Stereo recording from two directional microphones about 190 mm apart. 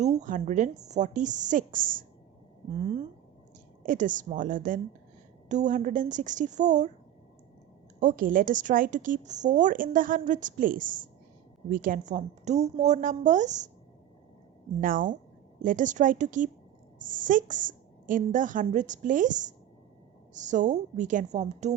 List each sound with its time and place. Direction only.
0.0 s a woman's voice: 40° right (ahead or behind)
3.8 s a woman's voice: 45° right (ahead or behind)
7.9 s a woman's voice: 45° right (ahead or behind)
14.8 s a woman's voice: 45° right (ahead or behind)